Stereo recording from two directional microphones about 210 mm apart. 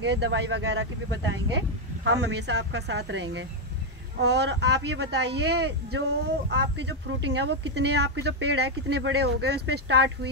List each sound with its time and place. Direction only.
0.0 s a woman's voice: 55° right (ahead or behind)
2.2 s a woman's voice: 55° right (ahead or behind)